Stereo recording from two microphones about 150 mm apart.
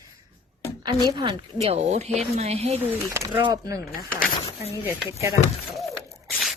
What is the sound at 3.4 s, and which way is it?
Speech, 30° right (ahead or behind).